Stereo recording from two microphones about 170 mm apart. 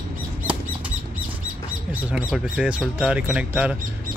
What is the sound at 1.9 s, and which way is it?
Bird, 10° right (ahead or behind).